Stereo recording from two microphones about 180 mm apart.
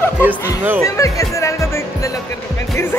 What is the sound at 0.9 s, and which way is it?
Music, 15° left (ahead or behind).